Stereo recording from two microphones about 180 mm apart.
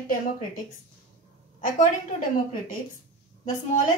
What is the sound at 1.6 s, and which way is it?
Speech, 45° left (ahead or behind).